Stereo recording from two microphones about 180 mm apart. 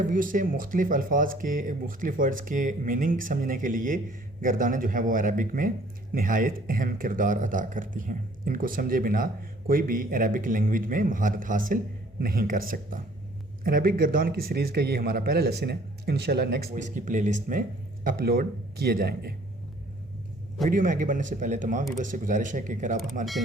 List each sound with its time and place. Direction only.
0.0 s a man's voice: 50° right (ahead or behind)
16.7 s speech: 45° right (ahead or behind)
18.0 s a man's voice: 55° right (ahead or behind)
20.7 s speech: 45° right (ahead or behind)